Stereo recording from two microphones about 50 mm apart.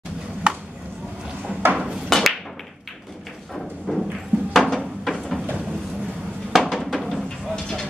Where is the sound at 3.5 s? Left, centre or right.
Centre.